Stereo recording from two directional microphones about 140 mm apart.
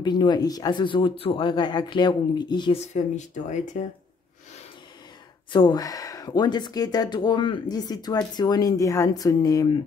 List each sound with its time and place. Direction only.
0.0 s speech: 30° left (ahead or behind)
2.7 s speech: 55° left (ahead or behind)
5.5 s speech: 35° left (ahead or behind)